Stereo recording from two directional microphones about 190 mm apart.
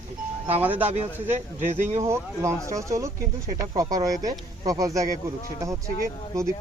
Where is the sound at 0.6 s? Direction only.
10° right (ahead or behind).